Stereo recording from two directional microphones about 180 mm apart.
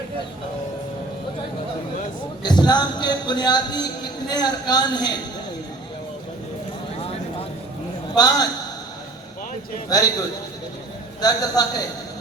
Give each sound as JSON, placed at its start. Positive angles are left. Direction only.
{"t": 2.4, "sound": "speech", "side_deg": 25}
{"t": 8.1, "sound": "a man's voice", "side_deg": 20}
{"t": 9.9, "sound": "a man's voice", "side_deg": 20}